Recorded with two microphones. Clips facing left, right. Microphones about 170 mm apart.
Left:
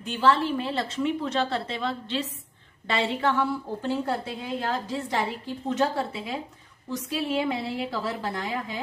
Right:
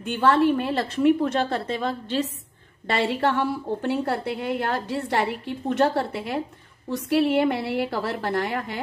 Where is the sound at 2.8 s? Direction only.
60° right (ahead or behind).